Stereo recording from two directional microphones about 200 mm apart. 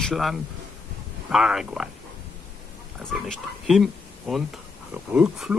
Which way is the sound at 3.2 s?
Centre (ahead or behind).